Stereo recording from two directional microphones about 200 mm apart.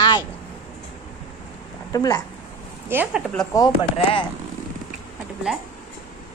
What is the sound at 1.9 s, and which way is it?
Speech, 20° left (ahead or behind).